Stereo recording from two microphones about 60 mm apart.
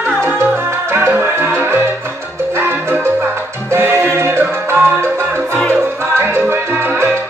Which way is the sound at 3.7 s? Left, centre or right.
Right.